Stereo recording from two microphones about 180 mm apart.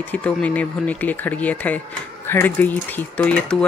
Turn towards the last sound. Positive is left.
turn(degrees=5)  # may be behind; listen again after turning